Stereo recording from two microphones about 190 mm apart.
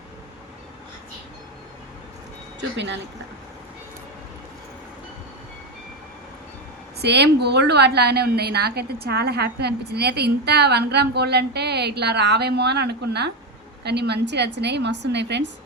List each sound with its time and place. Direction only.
2.6 s speech: 70° right (ahead or behind)
7.0 s a woman's voice: 60° right (ahead or behind)